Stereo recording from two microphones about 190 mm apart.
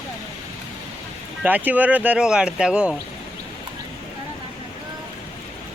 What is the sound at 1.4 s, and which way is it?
Speech, 10° right (ahead or behind).